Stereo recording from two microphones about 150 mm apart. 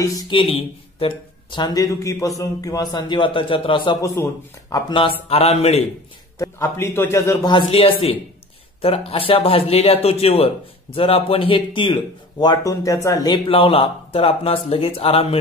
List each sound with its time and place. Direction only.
0.3 s speech: 35° left (ahead or behind)
4.0 s speech: 20° left (ahead or behind); by 5.9 s 45° left (ahead or behind)
6.3 s a man's voice: 20° left (ahead or behind)
7.4 s speech: 35° left (ahead or behind)